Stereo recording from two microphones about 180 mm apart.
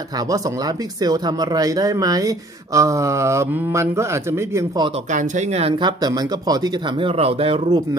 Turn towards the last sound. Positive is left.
turn(degrees=-30)  # may be behind; listen again after turning